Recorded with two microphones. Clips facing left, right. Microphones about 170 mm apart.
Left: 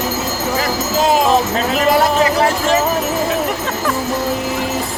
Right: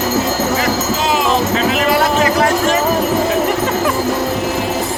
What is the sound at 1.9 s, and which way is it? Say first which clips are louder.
Music: even; 30° left (ahead or behind).